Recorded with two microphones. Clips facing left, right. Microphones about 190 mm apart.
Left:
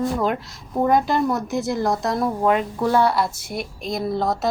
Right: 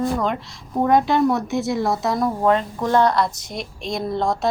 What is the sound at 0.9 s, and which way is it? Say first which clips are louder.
Speech: right 3 dB; centre (ahead or behind).